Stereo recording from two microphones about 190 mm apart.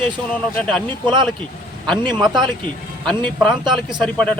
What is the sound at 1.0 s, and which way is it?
Speech, 25° right (ahead or behind).